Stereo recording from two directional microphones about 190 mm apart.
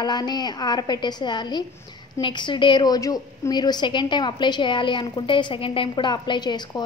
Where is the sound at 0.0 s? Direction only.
20° left (ahead or behind).